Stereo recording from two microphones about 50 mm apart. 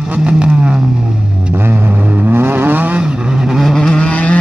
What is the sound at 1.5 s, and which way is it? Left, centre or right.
Vehicle, right.